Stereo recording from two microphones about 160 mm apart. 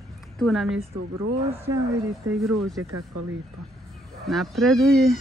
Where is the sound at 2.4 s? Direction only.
Centre (ahead or behind).